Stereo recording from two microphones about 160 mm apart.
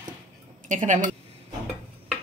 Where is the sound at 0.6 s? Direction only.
55° right (ahead or behind).